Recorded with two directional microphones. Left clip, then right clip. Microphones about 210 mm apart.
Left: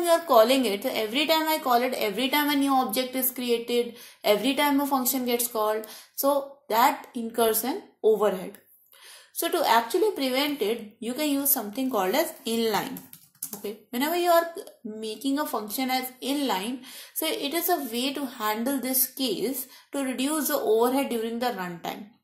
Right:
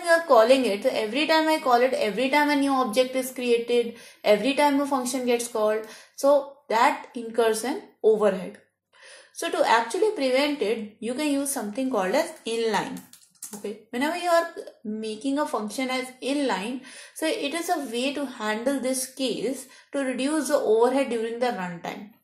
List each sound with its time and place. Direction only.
0.0 s a woman's voice: 30° left (ahead or behind)
13.9 s a woman's voice: 35° left (ahead or behind)